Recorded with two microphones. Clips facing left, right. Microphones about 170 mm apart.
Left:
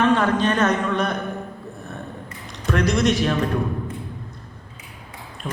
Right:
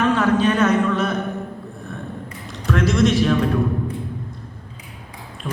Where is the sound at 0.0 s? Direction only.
10° right (ahead or behind).